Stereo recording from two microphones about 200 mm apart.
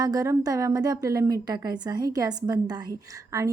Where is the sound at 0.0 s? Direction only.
20° right (ahead or behind).